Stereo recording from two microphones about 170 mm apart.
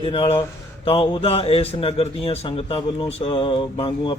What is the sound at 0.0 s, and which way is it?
A man's voice, 35° left (ahead or behind).